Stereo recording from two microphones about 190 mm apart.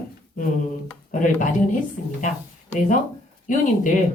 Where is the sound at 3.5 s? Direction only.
40° left (ahead or behind).